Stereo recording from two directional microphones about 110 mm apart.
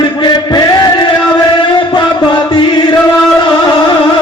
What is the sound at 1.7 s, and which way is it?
Chant, 45° left (ahead or behind).